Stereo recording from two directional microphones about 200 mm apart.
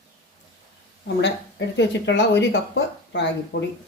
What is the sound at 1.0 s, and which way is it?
Speech, 60° left (ahead or behind).